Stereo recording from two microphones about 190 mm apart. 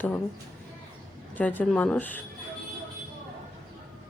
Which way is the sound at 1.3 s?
10° left (ahead or behind).